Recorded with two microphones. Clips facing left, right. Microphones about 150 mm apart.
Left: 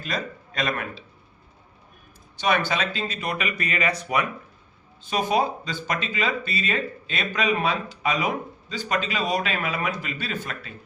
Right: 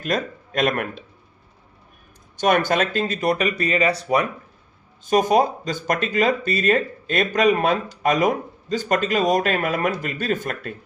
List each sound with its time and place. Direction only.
0.0 s speech: 50° right (ahead or behind)
2.4 s speech: 50° right (ahead or behind); by 4.3 s 30° right (ahead or behind)
5.0 s speech: 45° right (ahead or behind)